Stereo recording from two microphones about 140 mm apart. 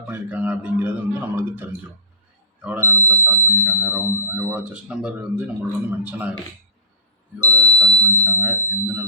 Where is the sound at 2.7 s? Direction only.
15° right (ahead or behind).